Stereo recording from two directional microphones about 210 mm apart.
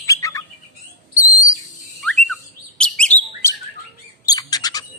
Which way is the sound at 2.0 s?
Centre (ahead or behind).